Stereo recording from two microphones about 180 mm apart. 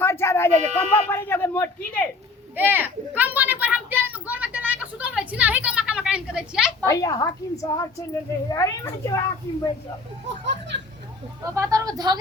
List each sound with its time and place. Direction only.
0.0 s speech: 15° left (ahead or behind)
2.6 s a sound: 10° right (ahead or behind)
6.8 s speech: 20° left (ahead or behind)
10.2 s a child's voice: 80° right
11.4 s a woman's voice: 15° right (ahead or behind)